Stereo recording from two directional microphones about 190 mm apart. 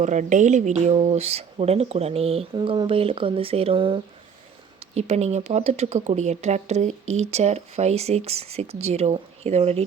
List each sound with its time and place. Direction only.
0.0 s speech: 40° right (ahead or behind)